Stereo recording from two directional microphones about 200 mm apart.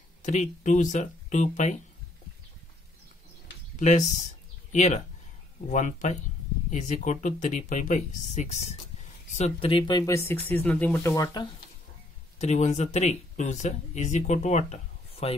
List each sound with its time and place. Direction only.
0.2 s speech: 35° left (ahead or behind)
3.8 s speech: 35° left (ahead or behind); by 11.4 s 15° left (ahead or behind)
12.4 s speech: 35° left (ahead or behind)